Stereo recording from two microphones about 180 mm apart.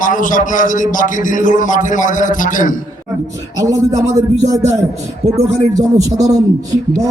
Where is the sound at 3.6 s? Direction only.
15° right (ahead or behind).